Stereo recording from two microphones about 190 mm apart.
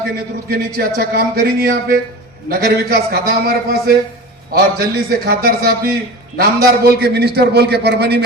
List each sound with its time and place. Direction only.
0.5 s a man's voice: 55° right (ahead or behind)